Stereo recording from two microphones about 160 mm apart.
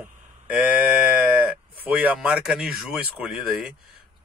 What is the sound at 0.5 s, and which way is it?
Speech, 10° right (ahead or behind).